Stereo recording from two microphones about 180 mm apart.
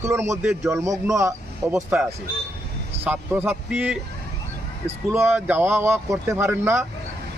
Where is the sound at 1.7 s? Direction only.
5° right (ahead or behind).